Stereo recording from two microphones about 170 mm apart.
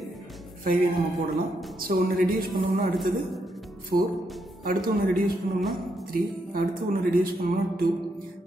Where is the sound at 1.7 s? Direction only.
60° right (ahead or behind).